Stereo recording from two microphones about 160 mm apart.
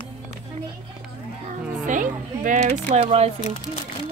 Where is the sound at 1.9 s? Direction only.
55° right (ahead or behind).